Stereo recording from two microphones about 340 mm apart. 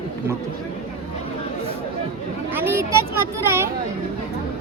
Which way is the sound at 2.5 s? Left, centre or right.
Centre.